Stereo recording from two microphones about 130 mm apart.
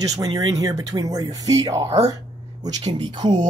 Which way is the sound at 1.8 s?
55° right (ahead or behind).